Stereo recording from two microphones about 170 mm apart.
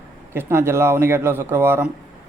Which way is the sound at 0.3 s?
15° right (ahead or behind).